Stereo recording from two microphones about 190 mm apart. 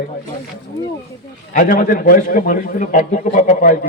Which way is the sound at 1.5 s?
45° left (ahead or behind).